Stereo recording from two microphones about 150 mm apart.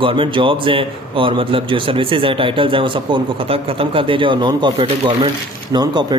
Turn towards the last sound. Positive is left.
turn(degrees=-30)  # may be behind; listen again after turning